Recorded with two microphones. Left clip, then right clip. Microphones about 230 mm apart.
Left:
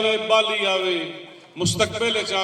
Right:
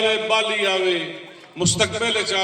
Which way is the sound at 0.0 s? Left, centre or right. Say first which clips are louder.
Even; left.